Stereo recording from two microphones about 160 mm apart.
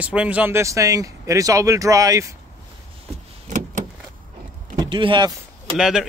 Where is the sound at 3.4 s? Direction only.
50° right (ahead or behind).